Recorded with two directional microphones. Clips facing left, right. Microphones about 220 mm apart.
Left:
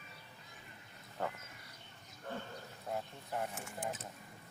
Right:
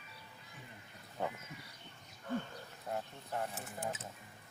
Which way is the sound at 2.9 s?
5° left (ahead or behind).